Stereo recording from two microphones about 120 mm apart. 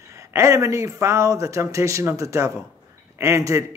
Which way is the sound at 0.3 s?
25° right (ahead or behind).